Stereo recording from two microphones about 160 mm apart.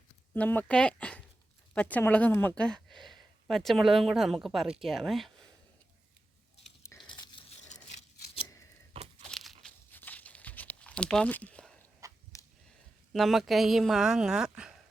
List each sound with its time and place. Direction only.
0.3 s a woman's voice: 10° left (ahead or behind)
7.2 s a sound: 30° left (ahead or behind)
9.2 s crumpling: centre (ahead or behind)
9.9 s tearing: 10° left (ahead or behind)
12.0 s a sound: 20° right (ahead or behind)
13.1 s a woman's voice: centre (ahead or behind)